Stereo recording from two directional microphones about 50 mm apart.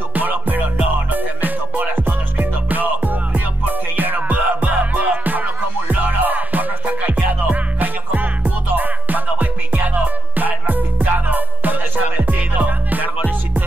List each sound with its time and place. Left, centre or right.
0.1 s music: right